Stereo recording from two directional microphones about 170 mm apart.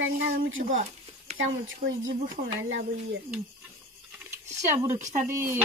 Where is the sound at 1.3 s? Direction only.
40° right (ahead or behind).